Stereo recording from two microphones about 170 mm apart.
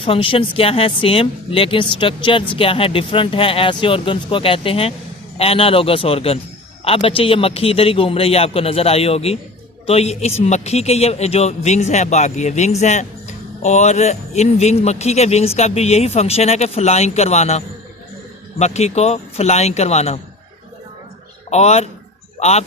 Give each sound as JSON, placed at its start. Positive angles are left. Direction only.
{"t": 0.0, "sound": "speech", "side_deg": 30}
{"t": 18.6, "sound": "speech", "side_deg": 40}
{"t": 21.5, "sound": "speech", "side_deg": 40}